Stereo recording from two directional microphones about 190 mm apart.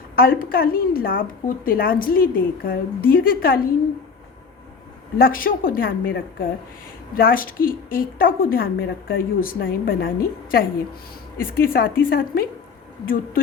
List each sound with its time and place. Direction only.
0.2 s a woman's voice: 50° left (ahead or behind)
5.1 s a woman's voice: 50° left (ahead or behind)